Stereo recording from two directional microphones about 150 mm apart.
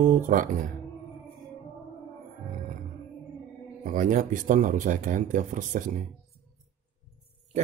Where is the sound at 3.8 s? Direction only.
60° right (ahead or behind).